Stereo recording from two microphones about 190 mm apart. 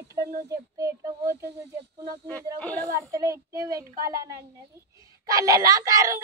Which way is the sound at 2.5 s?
10° left (ahead or behind).